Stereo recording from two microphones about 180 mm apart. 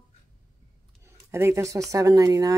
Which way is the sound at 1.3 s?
15° right (ahead or behind).